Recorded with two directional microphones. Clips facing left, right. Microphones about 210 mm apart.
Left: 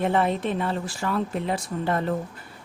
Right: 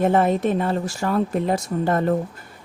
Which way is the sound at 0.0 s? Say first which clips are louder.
Right 5 dB; 45° right (ahead or behind).